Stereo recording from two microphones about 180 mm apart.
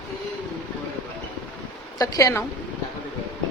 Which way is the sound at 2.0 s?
20° left (ahead or behind).